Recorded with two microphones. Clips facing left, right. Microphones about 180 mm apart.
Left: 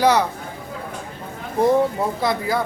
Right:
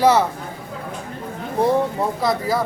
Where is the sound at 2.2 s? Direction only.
Centre (ahead or behind).